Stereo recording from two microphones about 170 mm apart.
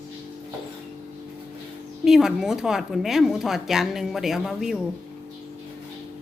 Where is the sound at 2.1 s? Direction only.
Centre (ahead or behind).